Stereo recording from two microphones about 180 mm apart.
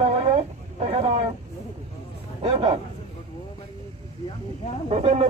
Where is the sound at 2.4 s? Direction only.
30° right (ahead or behind).